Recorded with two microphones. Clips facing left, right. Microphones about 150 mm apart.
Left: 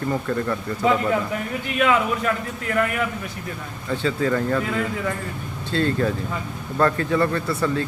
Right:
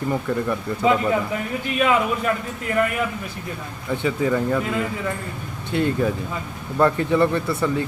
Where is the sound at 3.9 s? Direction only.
15° right (ahead or behind).